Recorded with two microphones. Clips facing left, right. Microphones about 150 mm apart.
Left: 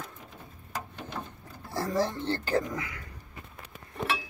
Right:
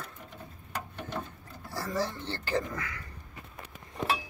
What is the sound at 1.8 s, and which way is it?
Speech, 15° left (ahead or behind).